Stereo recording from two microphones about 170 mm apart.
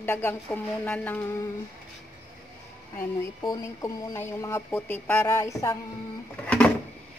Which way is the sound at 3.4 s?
20° left (ahead or behind).